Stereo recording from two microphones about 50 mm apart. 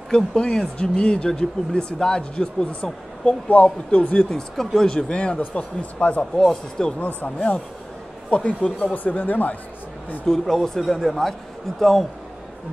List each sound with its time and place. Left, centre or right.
0.1 s speech: centre
4.3 s speech: centre; by 6.2 s left
6.3 s speech: centre
7.3 s speech: left
10.2 s speech: centre